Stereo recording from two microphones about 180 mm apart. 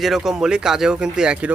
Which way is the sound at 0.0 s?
Centre (ahead or behind).